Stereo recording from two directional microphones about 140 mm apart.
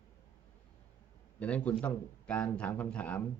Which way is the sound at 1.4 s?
10° left (ahead or behind).